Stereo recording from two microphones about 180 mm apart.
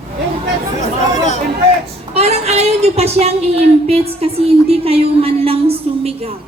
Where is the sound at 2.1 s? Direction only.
35° right (ahead or behind).